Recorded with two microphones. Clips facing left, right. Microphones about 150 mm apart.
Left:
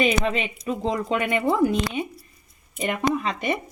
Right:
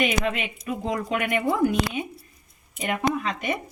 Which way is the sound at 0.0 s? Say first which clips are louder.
Left 2 dB; 30° left (ahead or behind).